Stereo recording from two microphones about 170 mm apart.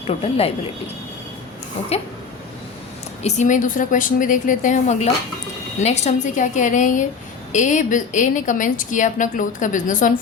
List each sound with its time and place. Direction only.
0.1 s speech: 35° left (ahead or behind)
3.2 s a woman's voice: 45° left (ahead or behind)